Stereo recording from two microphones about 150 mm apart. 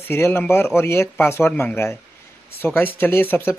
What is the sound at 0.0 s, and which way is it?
Speech, 15° left (ahead or behind).